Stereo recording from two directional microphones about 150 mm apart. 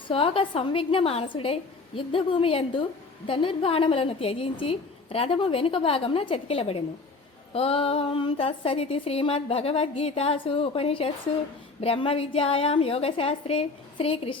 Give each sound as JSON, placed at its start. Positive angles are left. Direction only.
{"t": 0.1, "sound": "speech", "side_deg": 40}